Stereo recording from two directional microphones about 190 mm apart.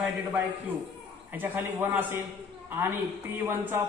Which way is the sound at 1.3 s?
10° right (ahead or behind).